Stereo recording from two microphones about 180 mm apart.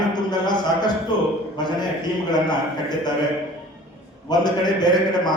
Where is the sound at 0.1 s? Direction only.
25° left (ahead or behind).